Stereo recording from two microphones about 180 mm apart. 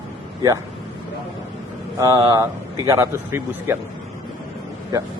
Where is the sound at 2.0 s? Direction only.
20° right (ahead or behind).